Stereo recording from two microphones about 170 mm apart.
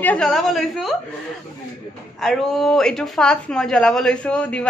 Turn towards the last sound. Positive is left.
turn(degrees=5)  # may be behind; listen again after turning